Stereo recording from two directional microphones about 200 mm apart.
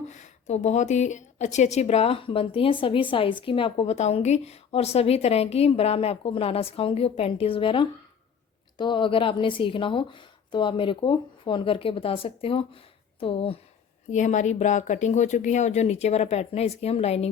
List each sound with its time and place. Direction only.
0.1 s speech: 35° left (ahead or behind)